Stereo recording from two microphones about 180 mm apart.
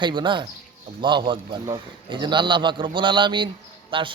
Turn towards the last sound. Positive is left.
turn(degrees=-30)  # may be behind; listen again after turning